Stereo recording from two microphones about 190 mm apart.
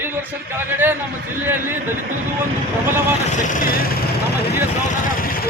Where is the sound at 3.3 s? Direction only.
40° left (ahead or behind).